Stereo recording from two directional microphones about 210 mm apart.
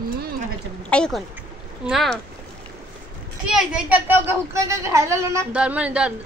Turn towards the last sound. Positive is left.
turn(degrees=-5)  # may be behind; listen again after turning